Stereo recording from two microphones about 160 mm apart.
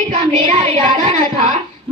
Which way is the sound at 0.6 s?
45° right (ahead or behind).